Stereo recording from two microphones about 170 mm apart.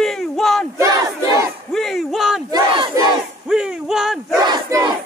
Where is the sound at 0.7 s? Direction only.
20° right (ahead or behind).